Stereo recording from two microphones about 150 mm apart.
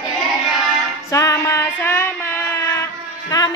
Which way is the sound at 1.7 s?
15° left (ahead or behind).